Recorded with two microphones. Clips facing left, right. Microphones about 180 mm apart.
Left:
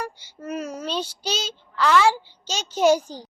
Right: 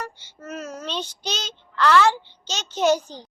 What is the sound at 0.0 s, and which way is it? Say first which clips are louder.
A child's voice: left 3 dB; 10° left (ahead or behind).